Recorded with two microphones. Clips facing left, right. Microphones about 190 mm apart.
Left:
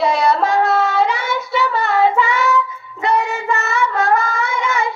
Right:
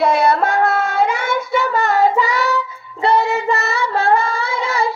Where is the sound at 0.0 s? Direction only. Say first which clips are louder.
Right 1 dB; 55° right (ahead or behind).